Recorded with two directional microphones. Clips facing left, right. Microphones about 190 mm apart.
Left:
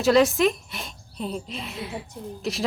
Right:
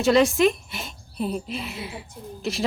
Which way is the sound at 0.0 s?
Centre (ahead or behind).